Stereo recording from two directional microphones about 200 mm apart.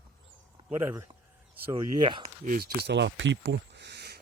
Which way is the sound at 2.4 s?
45° right (ahead or behind).